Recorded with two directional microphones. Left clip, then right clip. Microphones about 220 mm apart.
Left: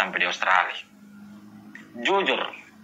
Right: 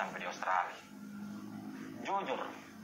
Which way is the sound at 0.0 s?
50° left (ahead or behind).